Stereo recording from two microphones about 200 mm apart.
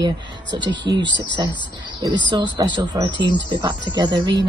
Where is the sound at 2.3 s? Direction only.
25° right (ahead or behind).